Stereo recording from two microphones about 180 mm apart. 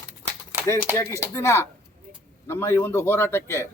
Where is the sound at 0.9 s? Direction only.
15° left (ahead or behind).